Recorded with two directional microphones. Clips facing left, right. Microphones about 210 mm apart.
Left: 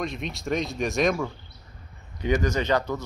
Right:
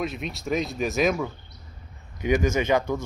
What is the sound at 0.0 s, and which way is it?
Speech, centre (ahead or behind).